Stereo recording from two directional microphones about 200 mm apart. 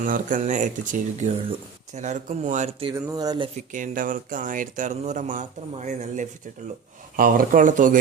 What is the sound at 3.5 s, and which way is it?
A man's voice, 40° right (ahead or behind).